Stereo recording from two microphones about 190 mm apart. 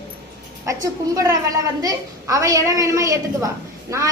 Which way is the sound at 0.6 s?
15° right (ahead or behind).